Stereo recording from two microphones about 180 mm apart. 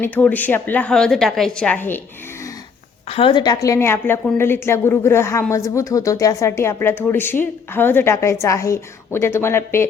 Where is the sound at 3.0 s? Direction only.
30° left (ahead or behind).